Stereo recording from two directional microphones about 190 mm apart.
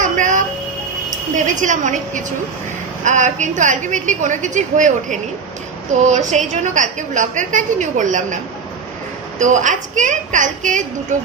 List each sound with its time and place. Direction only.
0.0 s a sound: 40° right (ahead or behind)
1.5 s a woman's voice: 40° right (ahead or behind)
9.4 s a woman's voice: 40° right (ahead or behind)